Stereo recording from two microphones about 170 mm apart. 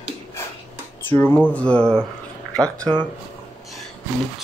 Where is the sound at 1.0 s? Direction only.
10° left (ahead or behind).